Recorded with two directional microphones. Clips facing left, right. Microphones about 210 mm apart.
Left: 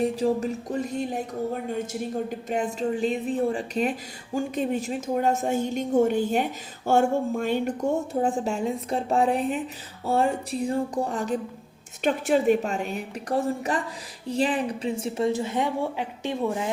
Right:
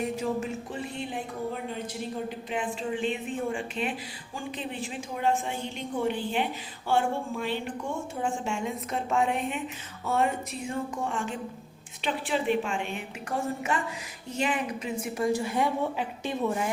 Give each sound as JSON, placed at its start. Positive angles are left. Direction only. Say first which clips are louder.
{"t": 0.0, "sound": "a woman's voice", "louder": "left 6 dB", "side_deg": 35}